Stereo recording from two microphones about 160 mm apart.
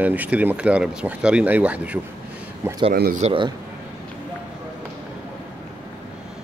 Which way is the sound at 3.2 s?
40° right (ahead or behind).